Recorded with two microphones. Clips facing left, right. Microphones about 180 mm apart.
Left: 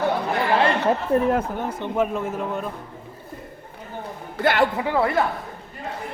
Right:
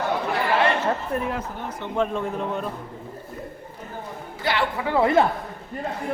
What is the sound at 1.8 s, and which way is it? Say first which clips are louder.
Speech: even; 10° left (ahead or behind).